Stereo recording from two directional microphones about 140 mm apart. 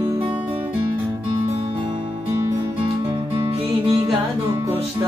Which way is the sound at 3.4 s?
45° right (ahead or behind).